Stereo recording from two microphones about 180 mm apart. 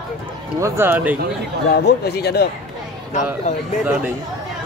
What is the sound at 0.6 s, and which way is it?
Speech, 15° right (ahead or behind).